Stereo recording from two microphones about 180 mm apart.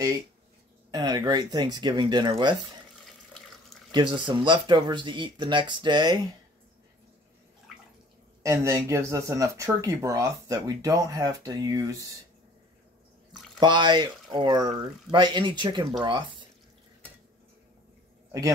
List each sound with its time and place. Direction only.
0.9 s speech: 25° right (ahead or behind)
3.9 s speech: 25° right (ahead or behind)
7.7 s bathtub: centre (ahead or behind)
8.4 s speech: 15° right (ahead or behind)
13.6 s speech: 25° right (ahead or behind)